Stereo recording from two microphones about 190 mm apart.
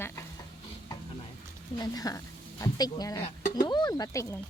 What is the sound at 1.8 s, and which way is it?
A woman's voice, 20° left (ahead or behind).